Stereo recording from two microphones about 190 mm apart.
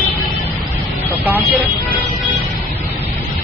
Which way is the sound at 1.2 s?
10° right (ahead or behind).